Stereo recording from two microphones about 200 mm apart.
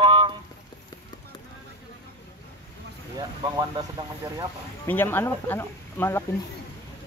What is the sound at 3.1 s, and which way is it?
Speech, 20° right (ahead or behind).